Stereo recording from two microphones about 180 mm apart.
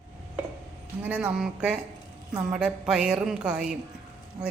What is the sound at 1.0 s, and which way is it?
A woman's voice, 10° right (ahead or behind).